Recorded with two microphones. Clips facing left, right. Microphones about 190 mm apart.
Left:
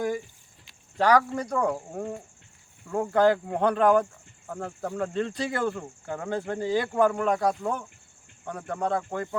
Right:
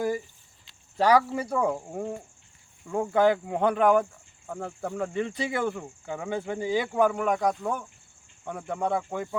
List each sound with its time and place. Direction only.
0.9 s speech: 10° right (ahead or behind)
3.6 s speech: 20° right (ahead or behind)
4.4 s speech: 5° right (ahead or behind)
5.8 s speech: 5° right (ahead or behind)
7.1 s speech: centre (ahead or behind)
8.7 s speech: 15° right (ahead or behind)
9.0 s speech: 5° right (ahead or behind)